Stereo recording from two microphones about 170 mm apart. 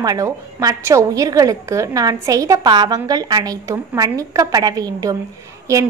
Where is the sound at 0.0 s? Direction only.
20° right (ahead or behind).